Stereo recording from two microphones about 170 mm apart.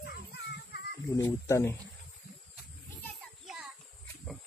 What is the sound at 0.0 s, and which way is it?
Music, 70° left (ahead or behind).